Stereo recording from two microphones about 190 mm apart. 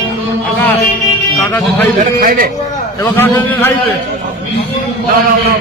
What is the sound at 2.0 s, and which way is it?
Speech, 50° right (ahead or behind).